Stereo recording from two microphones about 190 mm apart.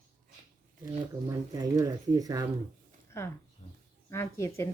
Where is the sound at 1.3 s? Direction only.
20° right (ahead or behind).